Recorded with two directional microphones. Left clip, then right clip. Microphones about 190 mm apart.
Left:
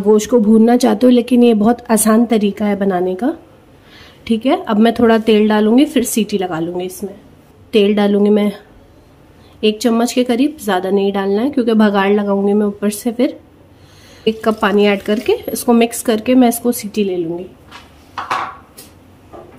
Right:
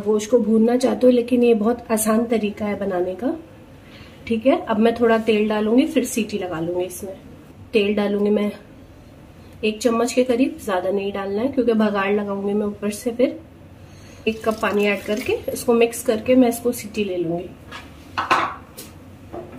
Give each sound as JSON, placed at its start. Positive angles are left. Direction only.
{"t": 0.1, "sound": "a woman's voice", "side_deg": 50}